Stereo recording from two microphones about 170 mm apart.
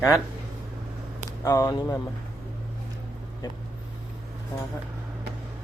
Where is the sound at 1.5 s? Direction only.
20° left (ahead or behind).